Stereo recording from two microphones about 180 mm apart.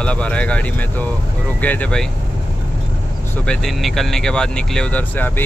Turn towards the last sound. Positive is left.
turn(degrees=10)  # may be behind; listen again after turning